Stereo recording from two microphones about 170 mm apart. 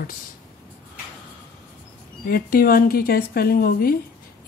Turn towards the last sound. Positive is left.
turn(degrees=60)  # may be behind; listen again after turning